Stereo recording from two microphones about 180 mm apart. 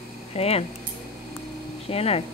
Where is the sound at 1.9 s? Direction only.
35° left (ahead or behind).